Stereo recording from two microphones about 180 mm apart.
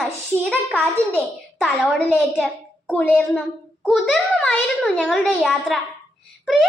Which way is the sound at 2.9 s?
10° left (ahead or behind).